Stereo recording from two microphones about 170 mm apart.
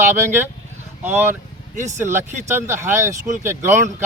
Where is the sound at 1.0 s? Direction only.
15° right (ahead or behind).